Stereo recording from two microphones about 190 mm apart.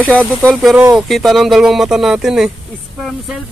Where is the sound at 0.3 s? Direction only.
5° left (ahead or behind).